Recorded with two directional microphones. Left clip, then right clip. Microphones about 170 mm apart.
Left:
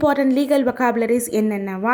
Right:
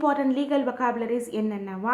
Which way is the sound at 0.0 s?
30° left (ahead or behind).